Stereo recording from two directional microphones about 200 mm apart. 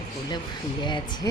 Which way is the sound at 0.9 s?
20° left (ahead or behind).